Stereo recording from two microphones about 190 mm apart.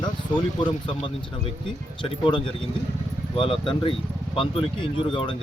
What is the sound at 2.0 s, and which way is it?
Speech, 25° left (ahead or behind).